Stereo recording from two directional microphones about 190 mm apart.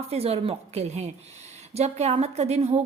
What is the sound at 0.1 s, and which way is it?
A woman's voice, 30° right (ahead or behind).